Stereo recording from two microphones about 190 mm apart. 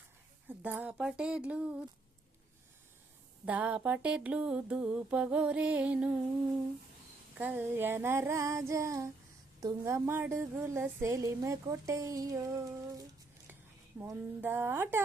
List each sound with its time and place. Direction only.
0.4 s speech: 10° right (ahead or behind)
3.4 s speech: 5° right (ahead or behind)
7.3 s speech: 10° right (ahead or behind)